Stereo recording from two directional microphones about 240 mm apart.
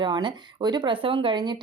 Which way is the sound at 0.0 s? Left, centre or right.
Centre.